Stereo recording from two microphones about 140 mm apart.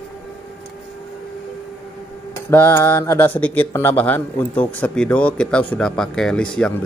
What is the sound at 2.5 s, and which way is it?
Speech, 20° left (ahead or behind).